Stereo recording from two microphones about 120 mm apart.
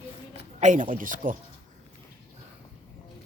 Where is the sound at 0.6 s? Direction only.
90° right.